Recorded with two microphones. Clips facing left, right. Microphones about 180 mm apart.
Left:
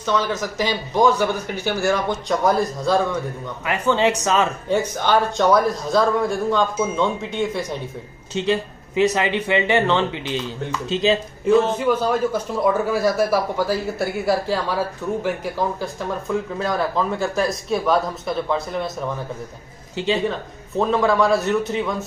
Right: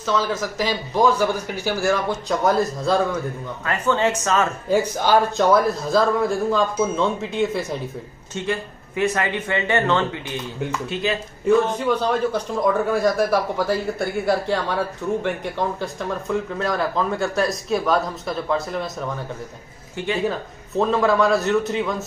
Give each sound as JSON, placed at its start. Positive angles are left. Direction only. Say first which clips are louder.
{"t": 0.0, "sound": "a man's voice", "louder": "even", "side_deg": -5}
{"t": 3.6, "sound": "speech", "louder": "left 2 dB", "side_deg": 15}
{"t": 4.6, "sound": "a man's voice", "louder": "right 1 dB", "side_deg": -10}
{"t": 8.4, "sound": "speech", "louder": "left 4 dB", "side_deg": 20}
{"t": 11.4, "sound": "a man's voice", "louder": "left 1 dB", "side_deg": 5}
{"t": 20.2, "sound": "a man's voice", "louder": "even", "side_deg": -5}